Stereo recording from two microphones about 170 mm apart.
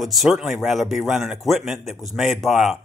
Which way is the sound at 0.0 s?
Centre (ahead or behind).